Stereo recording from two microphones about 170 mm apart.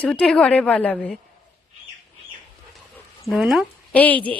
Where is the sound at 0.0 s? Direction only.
5° left (ahead or behind).